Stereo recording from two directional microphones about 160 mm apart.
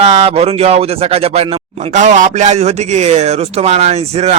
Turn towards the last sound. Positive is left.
turn(degrees=-40)  # may be behind; listen again after turning